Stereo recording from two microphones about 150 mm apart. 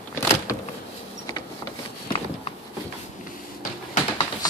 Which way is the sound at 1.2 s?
25° left (ahead or behind).